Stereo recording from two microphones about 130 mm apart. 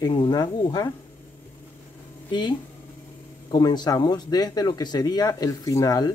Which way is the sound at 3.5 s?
30° left (ahead or behind).